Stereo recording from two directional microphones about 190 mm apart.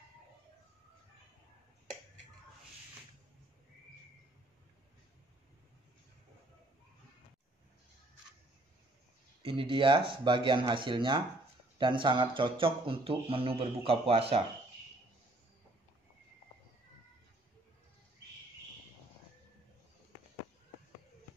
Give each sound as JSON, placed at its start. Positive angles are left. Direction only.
{"t": 9.4, "sound": "speech", "side_deg": -25}